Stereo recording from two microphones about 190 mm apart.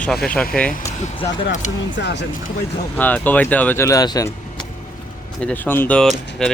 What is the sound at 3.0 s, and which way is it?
Speech, 10° left (ahead or behind).